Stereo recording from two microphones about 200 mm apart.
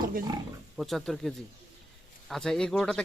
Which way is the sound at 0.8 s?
Centre (ahead or behind).